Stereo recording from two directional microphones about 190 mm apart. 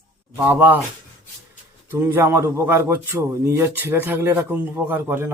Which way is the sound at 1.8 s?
10° right (ahead or behind).